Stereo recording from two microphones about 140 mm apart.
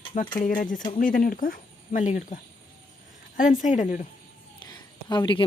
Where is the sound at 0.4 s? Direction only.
75° left (ahead or behind).